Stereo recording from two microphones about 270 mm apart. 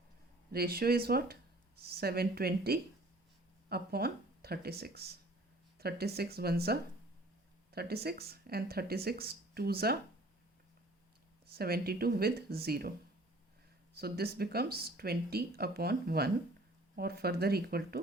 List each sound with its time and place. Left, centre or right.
0.5 s speech: right
11.4 s speech: right
13.9 s speech: right